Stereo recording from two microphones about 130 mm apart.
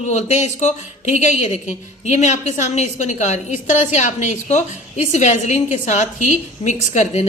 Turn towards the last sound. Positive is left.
turn(degrees=60)  # may be behind; listen again after turning